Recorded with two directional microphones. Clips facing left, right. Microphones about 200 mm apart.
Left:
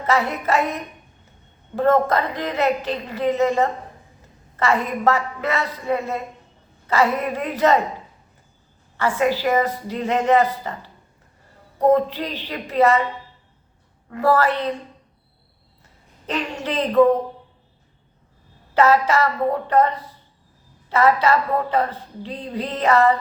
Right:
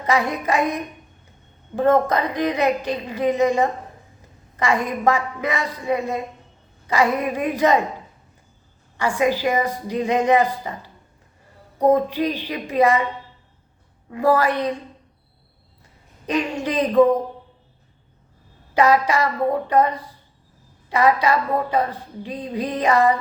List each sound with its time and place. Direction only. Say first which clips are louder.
0.0 s speech: even; 15° right (ahead or behind)
9.0 s speech: even; 15° right (ahead or behind)
14.1 s speech: even; 15° right (ahead or behind)
16.2 s speech: right 3 dB; 15° right (ahead or behind)
18.7 s speech: left 1 dB; 15° right (ahead or behind)